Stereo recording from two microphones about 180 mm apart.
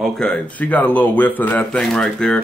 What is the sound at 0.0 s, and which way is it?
Speech, centre (ahead or behind).